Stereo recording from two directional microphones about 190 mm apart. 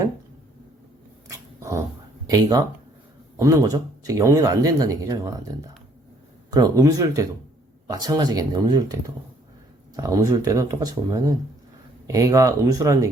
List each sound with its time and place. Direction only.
1.3 s dog: 15° right (ahead or behind)
2.2 s speech: 20° right (ahead or behind)
6.5 s speech: 20° right (ahead or behind)